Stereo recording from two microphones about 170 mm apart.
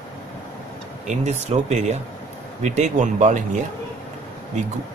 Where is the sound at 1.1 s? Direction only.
40° right (ahead or behind).